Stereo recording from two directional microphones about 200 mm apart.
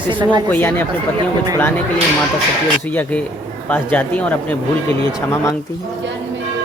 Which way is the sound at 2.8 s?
10° left (ahead or behind).